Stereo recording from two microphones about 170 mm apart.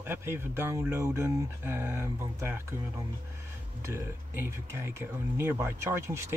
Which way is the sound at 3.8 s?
15° right (ahead or behind).